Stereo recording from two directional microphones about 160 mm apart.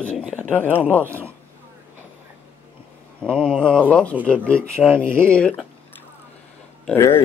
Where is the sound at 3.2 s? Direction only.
5° left (ahead or behind).